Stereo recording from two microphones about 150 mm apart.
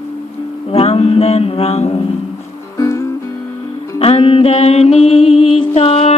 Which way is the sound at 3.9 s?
40° left (ahead or behind).